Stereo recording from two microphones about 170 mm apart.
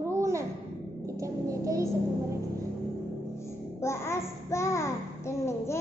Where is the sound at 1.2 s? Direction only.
20° right (ahead or behind).